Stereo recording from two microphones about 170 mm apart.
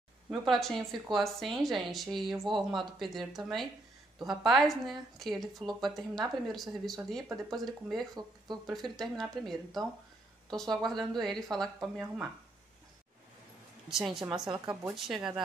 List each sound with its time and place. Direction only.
0.3 s speech: centre (ahead or behind)
8.1 s speech: 25° right (ahead or behind)
8.6 s speech: centre (ahead or behind)
13.8 s speech: centre (ahead or behind)
14.5 s speech: 25° right (ahead or behind)
14.9 s speech: centre (ahead or behind)